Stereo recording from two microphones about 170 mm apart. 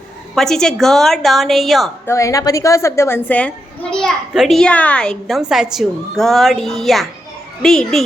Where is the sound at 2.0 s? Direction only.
15° left (ahead or behind).